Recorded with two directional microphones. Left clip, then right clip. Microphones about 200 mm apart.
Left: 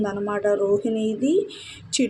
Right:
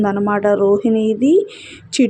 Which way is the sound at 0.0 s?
30° right (ahead or behind).